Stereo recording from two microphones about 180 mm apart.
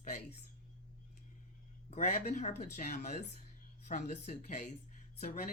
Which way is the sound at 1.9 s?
40° left (ahead or behind).